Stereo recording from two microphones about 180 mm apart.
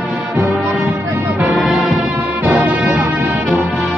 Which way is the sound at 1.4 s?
5° right (ahead or behind).